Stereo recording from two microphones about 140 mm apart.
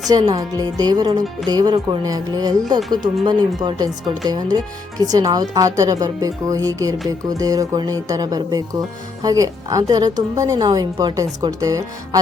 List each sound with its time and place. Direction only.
0.1 s a woman's voice: 25° right (ahead or behind)